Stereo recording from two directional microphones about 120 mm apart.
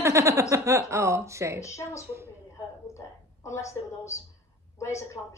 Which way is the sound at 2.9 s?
25° left (ahead or behind).